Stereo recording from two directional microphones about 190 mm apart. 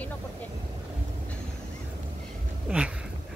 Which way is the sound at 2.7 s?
5° right (ahead or behind).